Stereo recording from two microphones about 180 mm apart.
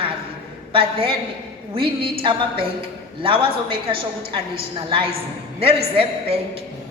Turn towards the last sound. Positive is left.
turn(degrees=-35)  # may be behind; listen again after turning